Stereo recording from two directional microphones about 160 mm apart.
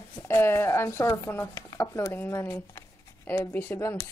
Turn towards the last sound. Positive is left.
turn(degrees=20)  # may be behind; listen again after turning